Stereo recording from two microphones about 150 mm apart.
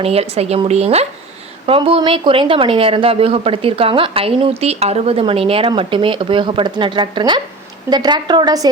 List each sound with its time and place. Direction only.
0.0 s a woman's voice: 40° right (ahead or behind); by 8.7 s 25° right (ahead or behind)